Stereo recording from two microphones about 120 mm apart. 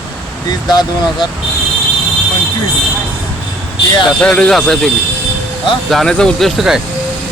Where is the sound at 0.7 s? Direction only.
35° left (ahead or behind).